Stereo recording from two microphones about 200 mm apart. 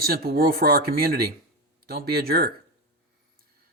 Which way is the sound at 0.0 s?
50° right (ahead or behind).